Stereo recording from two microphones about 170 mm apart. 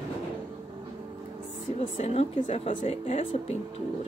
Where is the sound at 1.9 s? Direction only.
40° left (ahead or behind).